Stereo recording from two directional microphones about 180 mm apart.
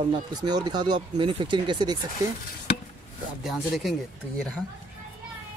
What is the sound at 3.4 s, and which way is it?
Speech, centre (ahead or behind).